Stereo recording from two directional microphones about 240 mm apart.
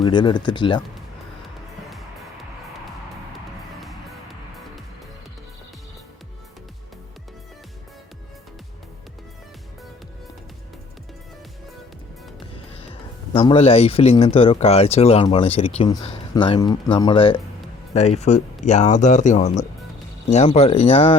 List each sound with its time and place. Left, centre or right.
0.0 s speech: centre
1.9 s music: centre
12.9 s speech: left